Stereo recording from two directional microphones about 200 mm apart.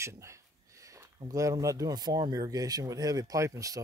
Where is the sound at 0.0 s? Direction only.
15° right (ahead or behind).